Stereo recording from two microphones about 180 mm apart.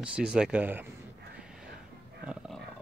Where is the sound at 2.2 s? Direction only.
5° right (ahead or behind).